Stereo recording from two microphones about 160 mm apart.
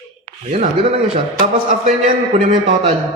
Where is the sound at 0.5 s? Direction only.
45° right (ahead or behind).